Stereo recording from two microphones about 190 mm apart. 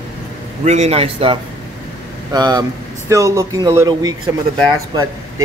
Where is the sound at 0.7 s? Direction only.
35° right (ahead or behind); by 4.1 s 20° right (ahead or behind).